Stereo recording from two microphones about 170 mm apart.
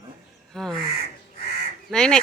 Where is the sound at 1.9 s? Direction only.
5° left (ahead or behind).